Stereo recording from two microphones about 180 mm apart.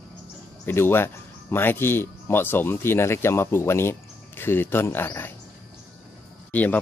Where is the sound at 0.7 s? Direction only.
15° left (ahead or behind).